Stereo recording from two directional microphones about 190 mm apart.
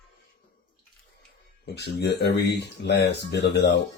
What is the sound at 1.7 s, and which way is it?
Speech, 60° left (ahead or behind).